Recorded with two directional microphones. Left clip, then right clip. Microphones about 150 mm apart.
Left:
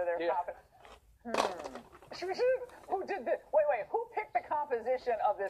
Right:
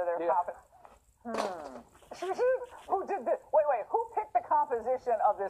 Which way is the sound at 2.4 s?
25° left (ahead or behind).